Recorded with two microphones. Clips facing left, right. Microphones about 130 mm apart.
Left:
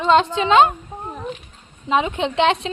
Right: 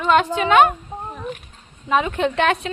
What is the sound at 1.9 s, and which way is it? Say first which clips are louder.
Speech: even; 20° left (ahead or behind).